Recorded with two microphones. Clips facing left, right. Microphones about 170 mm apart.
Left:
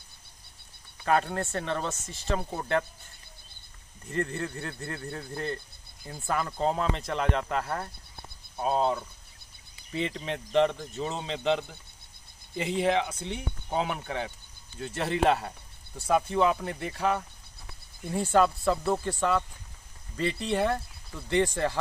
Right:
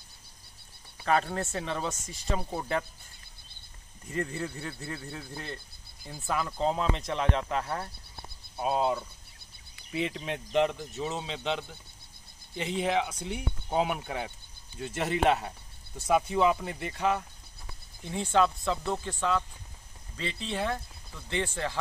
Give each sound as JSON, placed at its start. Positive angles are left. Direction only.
{"t": 1.0, "sound": "speech", "side_deg": 0}
{"t": 4.1, "sound": "speech", "side_deg": -5}
{"t": 20.2, "sound": "speech", "side_deg": 60}
{"t": 20.5, "sound": "speech", "side_deg": 5}